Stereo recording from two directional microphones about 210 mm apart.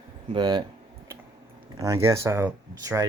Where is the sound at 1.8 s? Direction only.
15° right (ahead or behind).